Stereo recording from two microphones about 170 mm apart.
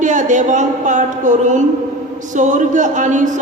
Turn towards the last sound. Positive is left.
turn(degrees=-45)  # may be behind; listen again after turning